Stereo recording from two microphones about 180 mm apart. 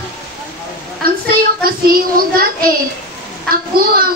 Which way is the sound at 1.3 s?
55° right (ahead or behind).